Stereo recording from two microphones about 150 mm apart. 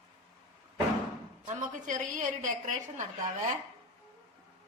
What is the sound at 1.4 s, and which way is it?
A woman's voice, 60° right (ahead or behind).